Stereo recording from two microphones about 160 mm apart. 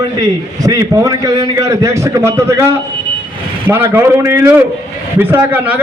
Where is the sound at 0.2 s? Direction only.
25° right (ahead or behind).